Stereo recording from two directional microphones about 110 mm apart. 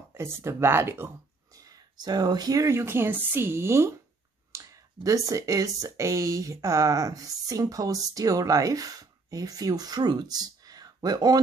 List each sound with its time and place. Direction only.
0.1 s speech: 25° right (ahead or behind)
2.0 s speech: 35° right (ahead or behind)
4.5 s a sound: 30° right (ahead or behind)
5.0 s speech: 30° right (ahead or behind)